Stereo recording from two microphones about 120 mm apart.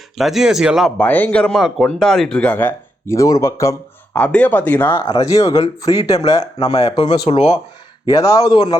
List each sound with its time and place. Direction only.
0.2 s speech: 5° right (ahead or behind)
0.9 s speech: 15° left (ahead or behind)
4.1 s speech: 10° left (ahead or behind)
5.2 s speech: 25° left (ahead or behind)
7.3 s speech: 65° left (ahead or behind)
8.0 s speech: 25° left (ahead or behind)